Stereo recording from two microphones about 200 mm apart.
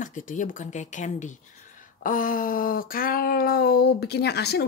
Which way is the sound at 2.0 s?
45° left (ahead or behind).